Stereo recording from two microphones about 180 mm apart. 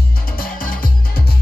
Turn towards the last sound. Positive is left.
turn(degrees=50)  # may be behind; listen again after turning